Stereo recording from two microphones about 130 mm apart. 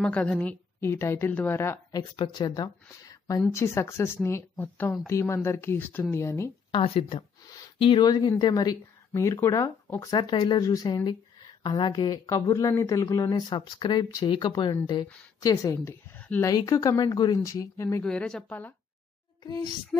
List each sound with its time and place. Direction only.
0.0 s a woman's voice: 10° left (ahead or behind)
2.0 s speech: 35° left (ahead or behind); by 6.5 s 20° left (ahead or behind)
6.7 s speech: 45° left (ahead or behind)
7.4 s a sound: 30° left (ahead or behind)
7.8 s speech: 35° left (ahead or behind)
10.1 s a woman's voice: 35° left (ahead or behind); by 16.4 s 15° left (ahead or behind)
16.4 s speech: 25° left (ahead or behind)
18.0 s a woman's voice: 5° left (ahead or behind)
19.4 s speech: 30° left (ahead or behind)